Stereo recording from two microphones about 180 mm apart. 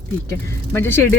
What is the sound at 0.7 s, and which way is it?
Speech, 15° left (ahead or behind).